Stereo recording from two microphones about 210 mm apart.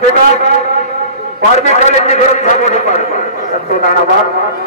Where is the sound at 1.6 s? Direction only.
30° left (ahead or behind).